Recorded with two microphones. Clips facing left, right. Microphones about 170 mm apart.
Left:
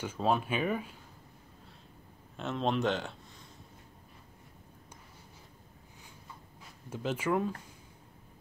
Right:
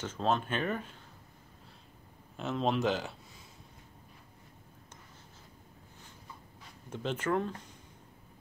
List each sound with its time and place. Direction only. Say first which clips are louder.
0.0 s speech: left 1 dB; 10° left (ahead or behind)
2.3 s speech: even; centre (ahead or behind)
6.9 s speech: left 1 dB; 5° left (ahead or behind)